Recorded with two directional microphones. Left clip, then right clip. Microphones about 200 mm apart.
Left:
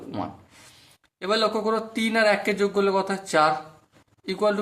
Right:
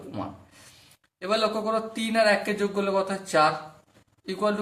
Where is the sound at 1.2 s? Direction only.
35° left (ahead or behind).